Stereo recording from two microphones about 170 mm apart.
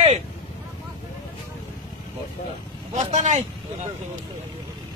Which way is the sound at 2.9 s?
45° right (ahead or behind).